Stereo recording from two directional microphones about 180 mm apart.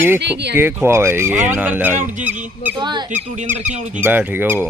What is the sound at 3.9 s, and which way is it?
Speech, 10° right (ahead or behind).